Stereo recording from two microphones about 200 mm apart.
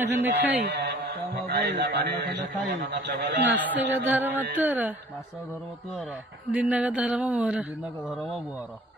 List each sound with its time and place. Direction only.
0.0 s speech: 10° right (ahead or behind)
0.7 s mantra: 60° right (ahead or behind)
1.5 s a man's voice: 55° right (ahead or behind)
3.4 s speech: 10° right (ahead or behind)
6.5 s speech: 5° right (ahead or behind)